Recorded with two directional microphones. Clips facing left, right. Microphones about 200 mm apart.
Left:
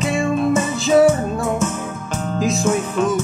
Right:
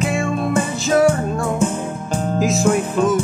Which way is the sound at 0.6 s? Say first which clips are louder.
Left 1 dB; centre (ahead or behind).